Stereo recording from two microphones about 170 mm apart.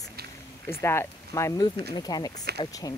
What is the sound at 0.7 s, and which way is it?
Speech, 15° left (ahead or behind).